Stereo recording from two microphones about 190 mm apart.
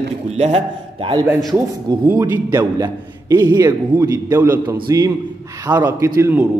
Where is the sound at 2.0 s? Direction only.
15° right (ahead or behind).